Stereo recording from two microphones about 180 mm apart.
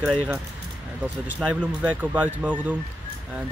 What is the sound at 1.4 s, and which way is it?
Speech, 5° right (ahead or behind).